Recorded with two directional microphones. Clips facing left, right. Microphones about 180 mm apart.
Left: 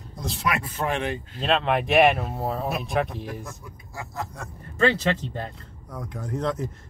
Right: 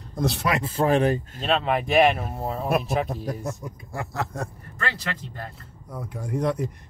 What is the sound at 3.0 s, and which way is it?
Speech, 40° right (ahead or behind).